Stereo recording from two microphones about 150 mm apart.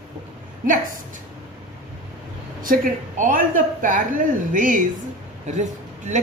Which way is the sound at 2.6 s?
65° right (ahead or behind).